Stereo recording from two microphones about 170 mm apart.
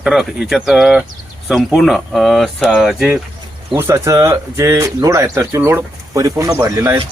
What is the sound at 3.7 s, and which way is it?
Speech, 15° right (ahead or behind).